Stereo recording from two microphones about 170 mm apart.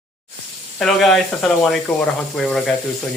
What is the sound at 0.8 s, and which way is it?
Speech, centre (ahead or behind).